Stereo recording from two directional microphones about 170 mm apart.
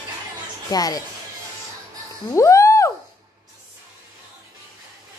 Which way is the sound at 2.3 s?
15° left (ahead or behind).